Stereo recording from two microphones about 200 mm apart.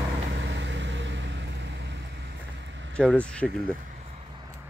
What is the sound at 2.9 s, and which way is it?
Speech, 5° left (ahead or behind).